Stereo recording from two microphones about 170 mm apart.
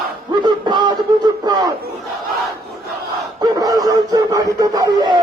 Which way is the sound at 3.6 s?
20° right (ahead or behind).